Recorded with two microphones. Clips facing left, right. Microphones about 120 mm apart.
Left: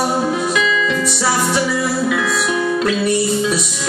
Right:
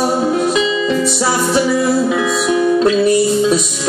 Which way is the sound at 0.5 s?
30° right (ahead or behind).